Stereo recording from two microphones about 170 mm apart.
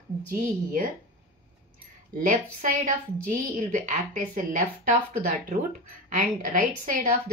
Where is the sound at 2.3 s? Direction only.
50° right (ahead or behind).